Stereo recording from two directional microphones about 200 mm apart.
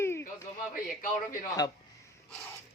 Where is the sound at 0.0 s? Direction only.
10° left (ahead or behind).